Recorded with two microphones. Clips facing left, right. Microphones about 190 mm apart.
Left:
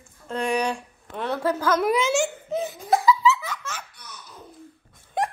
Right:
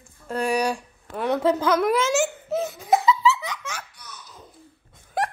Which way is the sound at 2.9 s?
25° right (ahead or behind).